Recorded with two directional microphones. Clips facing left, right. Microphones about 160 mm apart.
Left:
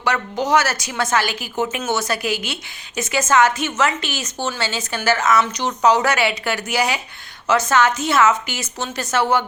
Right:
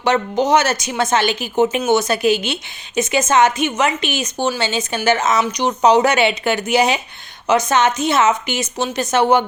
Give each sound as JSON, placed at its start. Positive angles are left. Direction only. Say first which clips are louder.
{"t": 0.0, "sound": "a woman's voice", "louder": "right 5 dB", "side_deg": -20}